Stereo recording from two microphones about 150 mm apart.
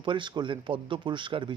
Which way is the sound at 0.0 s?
30° right (ahead or behind).